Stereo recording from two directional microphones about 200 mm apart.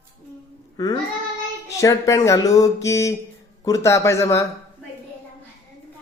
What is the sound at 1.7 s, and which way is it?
A child's voice, 15° left (ahead or behind).